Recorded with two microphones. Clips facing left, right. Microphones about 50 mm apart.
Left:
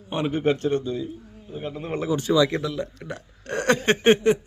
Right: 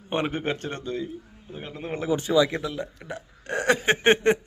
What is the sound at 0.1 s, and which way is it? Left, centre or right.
Speech, right.